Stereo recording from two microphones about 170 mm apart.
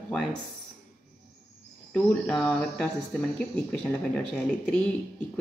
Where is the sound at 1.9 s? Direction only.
5° left (ahead or behind).